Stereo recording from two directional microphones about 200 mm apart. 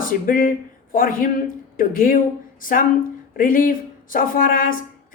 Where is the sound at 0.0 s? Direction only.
45° left (ahead or behind).